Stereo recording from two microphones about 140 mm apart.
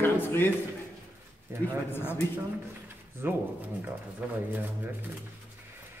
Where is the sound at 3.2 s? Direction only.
15° right (ahead or behind).